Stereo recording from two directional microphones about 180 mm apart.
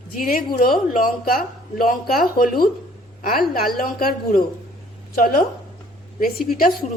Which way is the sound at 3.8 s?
55° left (ahead or behind).